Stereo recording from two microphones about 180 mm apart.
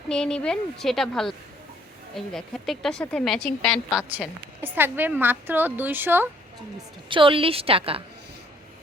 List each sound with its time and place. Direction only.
0.1 s a woman's voice: 5° left (ahead or behind)
4.1 s a woman's voice: 10° right (ahead or behind)
7.1 s a woman's voice: 30° right (ahead or behind)